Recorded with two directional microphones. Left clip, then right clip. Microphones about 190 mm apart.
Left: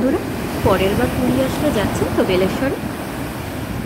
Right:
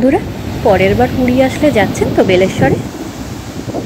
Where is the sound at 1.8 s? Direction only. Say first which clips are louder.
Right 7 dB; 15° right (ahead or behind).